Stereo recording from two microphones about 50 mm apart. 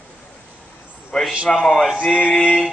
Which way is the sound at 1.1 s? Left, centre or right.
Centre.